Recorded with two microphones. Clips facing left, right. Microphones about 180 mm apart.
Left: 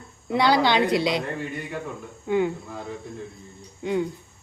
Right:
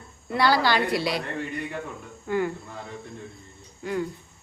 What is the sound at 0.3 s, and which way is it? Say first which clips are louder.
Speech: left 2 dB; 20° left (ahead or behind).